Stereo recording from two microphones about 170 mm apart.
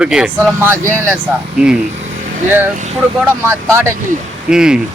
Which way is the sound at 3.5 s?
15° right (ahead or behind).